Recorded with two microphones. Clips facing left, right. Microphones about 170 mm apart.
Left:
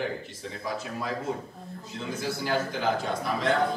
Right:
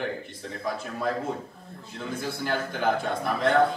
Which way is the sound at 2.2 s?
55° right (ahead or behind).